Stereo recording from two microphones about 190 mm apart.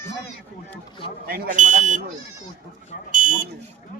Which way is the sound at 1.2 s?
50° right (ahead or behind).